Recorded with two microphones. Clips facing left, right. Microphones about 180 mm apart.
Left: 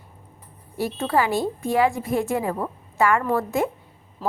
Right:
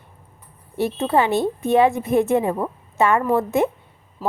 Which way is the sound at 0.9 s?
25° right (ahead or behind).